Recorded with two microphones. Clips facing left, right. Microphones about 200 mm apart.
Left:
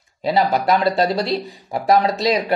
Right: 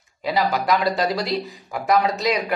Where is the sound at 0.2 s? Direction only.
30° left (ahead or behind).